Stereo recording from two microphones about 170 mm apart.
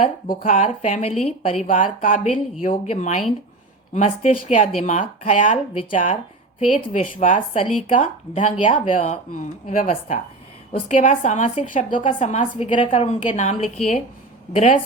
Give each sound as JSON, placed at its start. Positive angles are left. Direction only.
{"t": 0.3, "sound": "a woman's voice", "side_deg": 50}
{"t": 9.3, "sound": "a woman's voice", "side_deg": 50}